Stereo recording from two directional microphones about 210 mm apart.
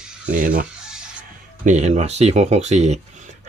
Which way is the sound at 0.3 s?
40° right (ahead or behind).